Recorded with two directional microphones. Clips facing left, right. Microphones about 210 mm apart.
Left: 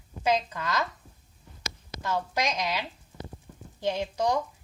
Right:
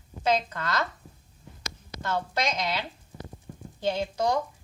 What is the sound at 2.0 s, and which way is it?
Speech, 15° left (ahead or behind).